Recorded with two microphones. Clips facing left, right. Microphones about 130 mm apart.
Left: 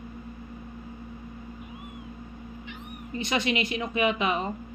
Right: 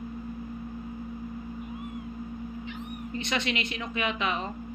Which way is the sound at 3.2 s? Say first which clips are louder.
Left 4 dB; 5° left (ahead or behind).